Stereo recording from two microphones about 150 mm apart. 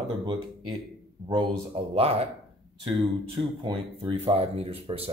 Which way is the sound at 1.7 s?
40° right (ahead or behind).